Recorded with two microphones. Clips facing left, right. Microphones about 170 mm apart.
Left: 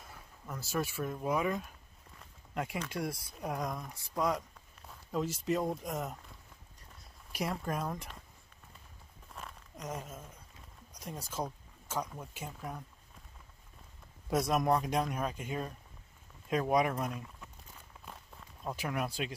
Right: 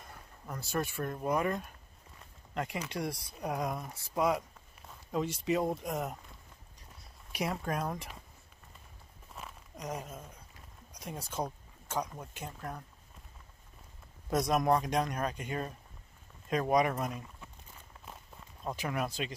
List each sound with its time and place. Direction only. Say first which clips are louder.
0.0 s speech: right 1 dB; centre (ahead or behind)
7.3 s speech: right 1 dB; centre (ahead or behind)
9.3 s a sound: right 1 dB; 5° right (ahead or behind)
10.9 s speech: right 1 dB; centre (ahead or behind)
14.3 s speech: right 1 dB; 5° left (ahead or behind)
18.0 s walk: even; 5° right (ahead or behind)
18.8 s speech: right 1 dB; 5° left (ahead or behind)